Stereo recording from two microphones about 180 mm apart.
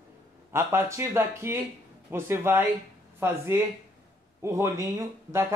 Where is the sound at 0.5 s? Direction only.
15° right (ahead or behind).